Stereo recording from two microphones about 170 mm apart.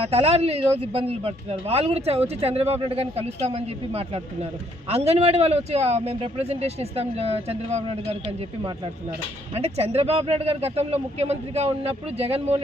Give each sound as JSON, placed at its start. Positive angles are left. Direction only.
{"t": 0.0, "sound": "speech", "side_deg": -35}
{"t": 9.6, "sound": "speech", "side_deg": -40}